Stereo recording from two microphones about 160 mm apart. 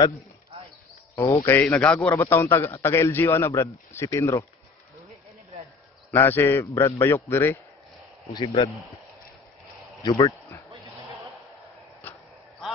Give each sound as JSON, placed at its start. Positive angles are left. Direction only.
{"t": 1.1, "sound": "speech", "side_deg": 15}
{"t": 6.1, "sound": "speech", "side_deg": 15}
{"t": 10.0, "sound": "speech", "side_deg": 25}
{"t": 12.0, "sound": "a sound", "side_deg": 10}